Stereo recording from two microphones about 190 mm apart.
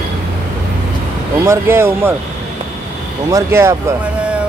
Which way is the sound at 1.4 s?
15° right (ahead or behind).